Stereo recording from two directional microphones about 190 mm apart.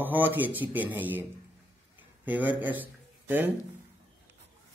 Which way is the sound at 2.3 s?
10° right (ahead or behind).